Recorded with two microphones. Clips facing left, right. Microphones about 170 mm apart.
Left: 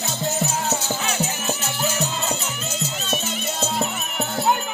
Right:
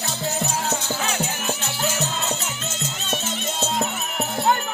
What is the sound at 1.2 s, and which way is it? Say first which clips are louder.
Music: left 1 dB; 10° right (ahead or behind).